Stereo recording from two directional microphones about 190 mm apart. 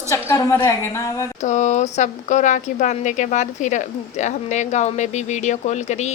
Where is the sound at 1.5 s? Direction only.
40° left (ahead or behind).